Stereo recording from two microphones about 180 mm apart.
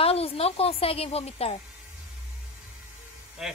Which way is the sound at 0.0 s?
35° left (ahead or behind).